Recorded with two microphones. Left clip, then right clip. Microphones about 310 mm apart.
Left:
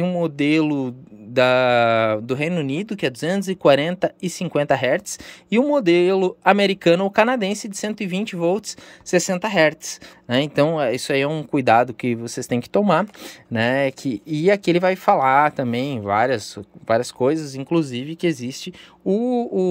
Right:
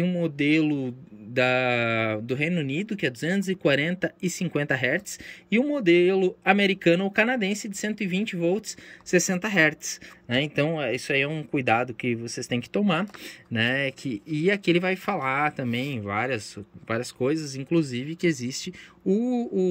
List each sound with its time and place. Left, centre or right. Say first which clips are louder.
0.0 s speech: left 5 dB; centre